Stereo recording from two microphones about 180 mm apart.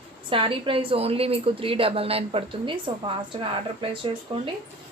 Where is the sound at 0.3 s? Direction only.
30° right (ahead or behind).